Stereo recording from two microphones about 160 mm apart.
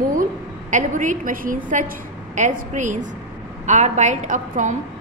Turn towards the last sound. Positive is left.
turn(degrees=-50)  # may be behind; listen again after turning